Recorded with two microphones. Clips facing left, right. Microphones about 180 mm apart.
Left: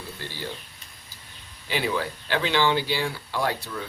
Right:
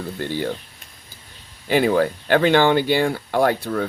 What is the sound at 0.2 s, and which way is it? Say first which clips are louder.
Speech: right 12 dB; 55° right (ahead or behind).